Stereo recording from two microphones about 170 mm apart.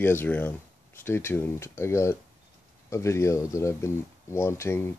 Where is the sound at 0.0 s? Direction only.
10° left (ahead or behind).